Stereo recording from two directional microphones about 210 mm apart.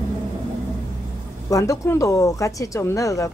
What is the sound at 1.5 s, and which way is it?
A woman's voice, 15° left (ahead or behind).